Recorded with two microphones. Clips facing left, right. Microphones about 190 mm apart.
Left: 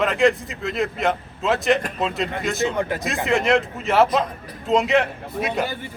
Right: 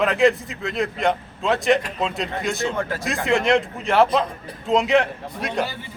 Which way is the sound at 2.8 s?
20° left (ahead or behind).